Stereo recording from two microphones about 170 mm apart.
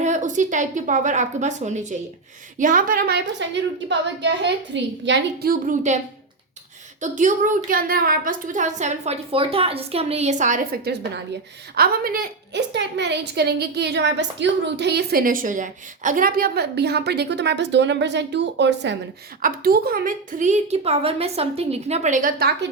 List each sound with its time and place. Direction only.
0.0 s a woman's voice: 45° right (ahead or behind)
7.0 s a woman's voice: 50° right (ahead or behind); by 18.9 s 90° right
19.4 s a woman's voice: 60° right (ahead or behind)